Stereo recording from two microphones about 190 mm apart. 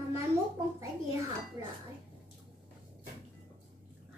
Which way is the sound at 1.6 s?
30° left (ahead or behind).